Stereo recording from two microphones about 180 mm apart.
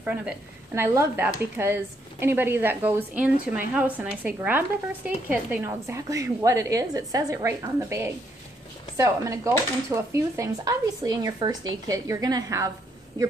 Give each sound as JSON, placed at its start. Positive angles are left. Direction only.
{"t": 0.0, "sound": "a woman's voice", "side_deg": -5}
{"t": 0.9, "sound": "dishes", "side_deg": -10}